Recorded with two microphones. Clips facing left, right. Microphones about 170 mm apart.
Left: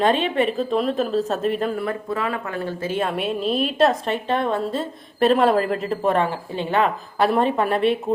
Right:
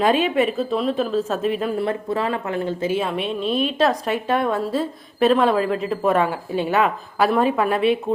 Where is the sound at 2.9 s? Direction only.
Centre (ahead or behind).